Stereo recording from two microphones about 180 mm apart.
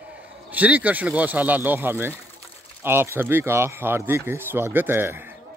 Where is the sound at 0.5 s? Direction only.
10° right (ahead or behind).